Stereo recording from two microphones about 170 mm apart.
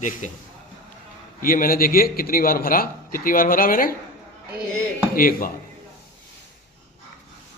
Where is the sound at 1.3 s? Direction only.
55° left (ahead or behind).